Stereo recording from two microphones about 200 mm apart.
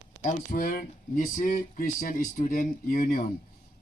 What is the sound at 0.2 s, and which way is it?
Speech, 40° left (ahead or behind).